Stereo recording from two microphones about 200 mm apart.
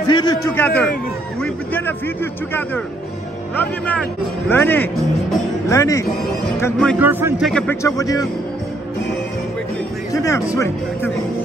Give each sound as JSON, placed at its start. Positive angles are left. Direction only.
{"t": 0.0, "sound": "a man's voice", "side_deg": 20}
{"t": 0.6, "sound": "speech", "side_deg": 10}
{"t": 3.5, "sound": "speech", "side_deg": 10}
{"t": 6.6, "sound": "speech", "side_deg": 5}
{"t": 7.0, "sound": "a man's voice", "side_deg": -10}
{"t": 7.4, "sound": "speech", "side_deg": 5}
{"t": 7.8, "sound": "speech", "side_deg": 15}
{"t": 10.1, "sound": "speech", "side_deg": 15}